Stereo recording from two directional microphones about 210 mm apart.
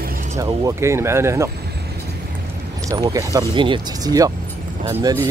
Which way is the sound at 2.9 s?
15° right (ahead or behind).